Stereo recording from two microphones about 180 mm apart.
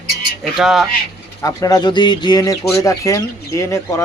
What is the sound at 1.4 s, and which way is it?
Speech, 20° left (ahead or behind).